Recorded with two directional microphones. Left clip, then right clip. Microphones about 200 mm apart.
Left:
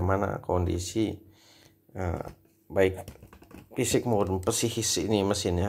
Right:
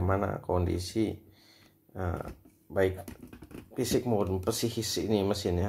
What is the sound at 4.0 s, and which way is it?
Speech, 15° left (ahead or behind).